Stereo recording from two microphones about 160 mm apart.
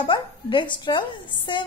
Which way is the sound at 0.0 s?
30° left (ahead or behind).